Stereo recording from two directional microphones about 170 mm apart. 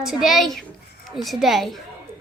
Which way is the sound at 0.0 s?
5° right (ahead or behind).